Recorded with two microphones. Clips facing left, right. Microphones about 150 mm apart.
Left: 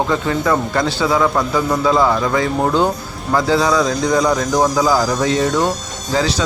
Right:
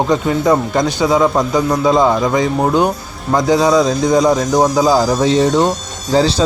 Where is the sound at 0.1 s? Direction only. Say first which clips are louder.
Right 4 dB; 20° right (ahead or behind).